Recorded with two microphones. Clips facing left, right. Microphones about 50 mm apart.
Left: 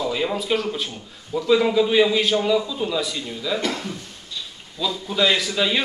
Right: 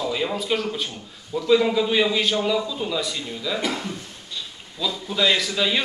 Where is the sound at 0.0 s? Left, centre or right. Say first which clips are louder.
Left 1 dB; centre.